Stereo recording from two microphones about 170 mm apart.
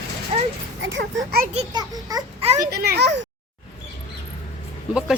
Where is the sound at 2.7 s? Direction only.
70° right (ahead or behind).